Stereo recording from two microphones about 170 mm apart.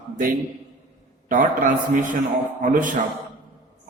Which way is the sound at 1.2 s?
50° right (ahead or behind).